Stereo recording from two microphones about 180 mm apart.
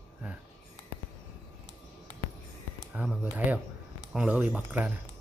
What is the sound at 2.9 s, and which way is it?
Speech, 5° right (ahead or behind).